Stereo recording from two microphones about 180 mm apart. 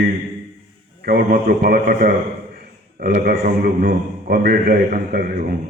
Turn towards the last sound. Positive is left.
turn(degrees=-50)  # may be behind; listen again after turning